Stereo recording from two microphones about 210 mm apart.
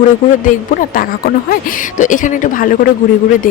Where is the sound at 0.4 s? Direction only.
40° left (ahead or behind).